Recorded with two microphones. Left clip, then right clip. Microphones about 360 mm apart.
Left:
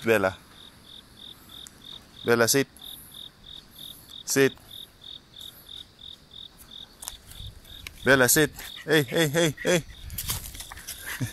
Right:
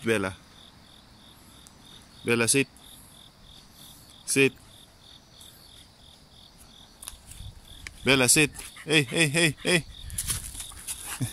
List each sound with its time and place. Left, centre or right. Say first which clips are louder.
0.0 s speech: left 4 dB; centre
2.2 s speech: left 3 dB; centre
4.2 s cricket: left 1 dB; centre
7.1 s cricket: left 3 dB; centre
8.0 s a man's voice: left 2 dB; centre